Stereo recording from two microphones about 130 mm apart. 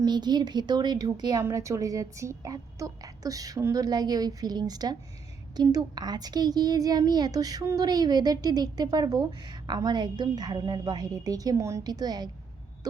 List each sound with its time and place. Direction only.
0.0 s a woman's voice: 35° right (ahead or behind)
12.8 s owl: 30° right (ahead or behind)